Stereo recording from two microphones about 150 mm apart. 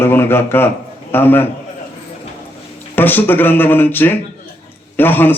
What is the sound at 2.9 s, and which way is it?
A man's voice, 15° left (ahead or behind).